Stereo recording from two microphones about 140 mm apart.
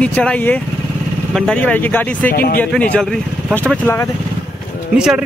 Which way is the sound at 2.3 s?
85° left.